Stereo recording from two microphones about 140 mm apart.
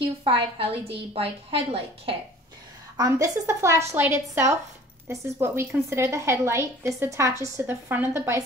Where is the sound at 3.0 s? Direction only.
20° right (ahead or behind).